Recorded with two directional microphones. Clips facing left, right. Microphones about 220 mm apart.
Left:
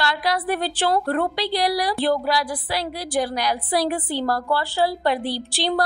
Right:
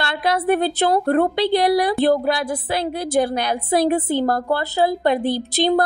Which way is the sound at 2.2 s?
55° right (ahead or behind).